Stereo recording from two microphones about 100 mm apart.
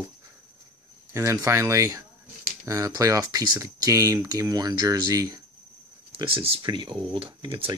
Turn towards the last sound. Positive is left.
turn(degrees=-60)  # may be behind; listen again after turning